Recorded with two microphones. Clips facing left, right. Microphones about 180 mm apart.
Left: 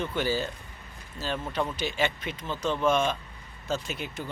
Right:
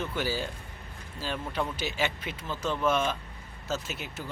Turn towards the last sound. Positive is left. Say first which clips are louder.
# left 2 dB
turn(degrees=-5)  # may be behind; listen again after turning